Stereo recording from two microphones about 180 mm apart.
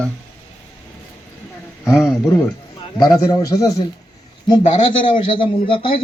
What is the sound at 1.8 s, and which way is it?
A man's voice, 15° left (ahead or behind).